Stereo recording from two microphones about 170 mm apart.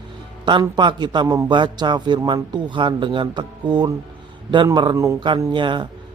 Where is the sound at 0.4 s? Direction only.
25° right (ahead or behind).